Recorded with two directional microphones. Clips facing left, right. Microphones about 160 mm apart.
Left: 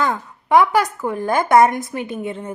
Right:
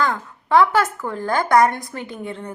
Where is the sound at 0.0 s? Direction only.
20° left (ahead or behind).